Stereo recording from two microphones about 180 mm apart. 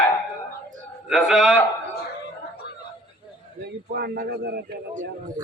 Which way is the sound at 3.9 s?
65° right (ahead or behind).